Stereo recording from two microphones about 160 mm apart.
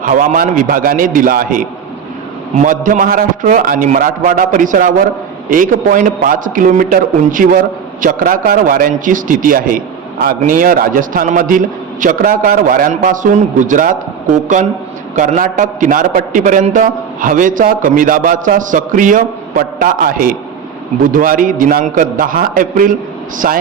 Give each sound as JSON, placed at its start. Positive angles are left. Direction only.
{"t": 0.0, "sound": "a man's voice", "side_deg": -55}